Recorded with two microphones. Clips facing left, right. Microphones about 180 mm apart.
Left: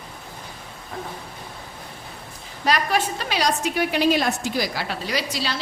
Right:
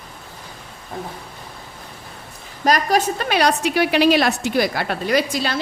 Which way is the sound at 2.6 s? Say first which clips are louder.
Right 4 dB; 40° right (ahead or behind).